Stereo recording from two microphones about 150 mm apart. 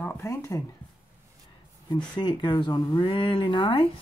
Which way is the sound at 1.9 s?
30° left (ahead or behind).